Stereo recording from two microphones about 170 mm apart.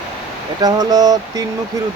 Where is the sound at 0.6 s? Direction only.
20° right (ahead or behind).